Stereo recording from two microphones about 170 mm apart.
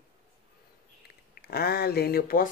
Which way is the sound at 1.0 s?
65° left (ahead or behind).